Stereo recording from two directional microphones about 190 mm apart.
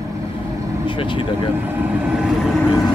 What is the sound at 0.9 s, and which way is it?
Speech, 25° left (ahead or behind).